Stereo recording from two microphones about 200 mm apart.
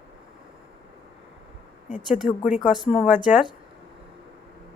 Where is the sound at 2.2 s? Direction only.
40° left (ahead or behind).